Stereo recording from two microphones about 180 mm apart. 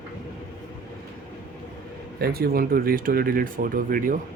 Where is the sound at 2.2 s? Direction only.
55° right (ahead or behind).